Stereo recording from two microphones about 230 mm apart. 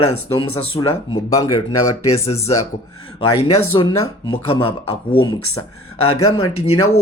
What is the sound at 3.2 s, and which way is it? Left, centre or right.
Speech, left.